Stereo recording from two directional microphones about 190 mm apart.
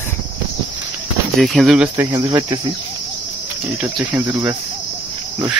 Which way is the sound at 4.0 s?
15° right (ahead or behind).